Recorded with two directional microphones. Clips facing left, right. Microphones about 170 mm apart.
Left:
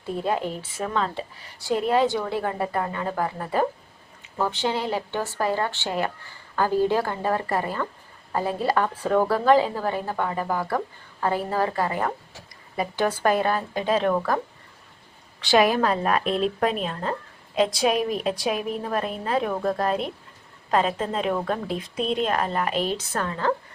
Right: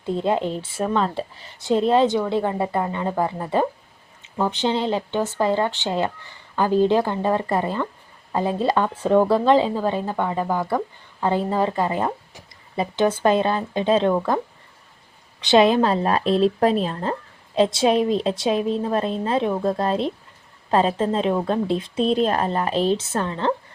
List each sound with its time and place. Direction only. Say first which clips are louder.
0.0 s a woman's voice: right 4 dB; 25° right (ahead or behind)
15.4 s a woman's voice: right 4 dB; 20° right (ahead or behind)